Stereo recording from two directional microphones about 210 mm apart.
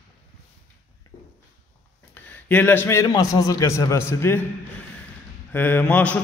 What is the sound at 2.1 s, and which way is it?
A man's voice, 10° left (ahead or behind).